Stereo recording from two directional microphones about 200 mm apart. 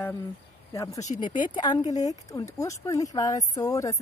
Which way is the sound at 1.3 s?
40° left (ahead or behind).